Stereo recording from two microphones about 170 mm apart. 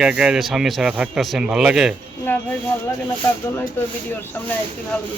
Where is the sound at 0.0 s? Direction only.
5° right (ahead or behind).